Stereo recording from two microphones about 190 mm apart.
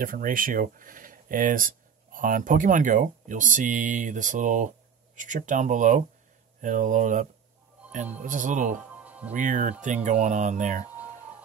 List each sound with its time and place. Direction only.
0.0 s speech: 45° right (ahead or behind)
9.0 s music: 10° right (ahead or behind)
9.3 s speech: 45° right (ahead or behind)
10.9 s music: 10° right (ahead or behind)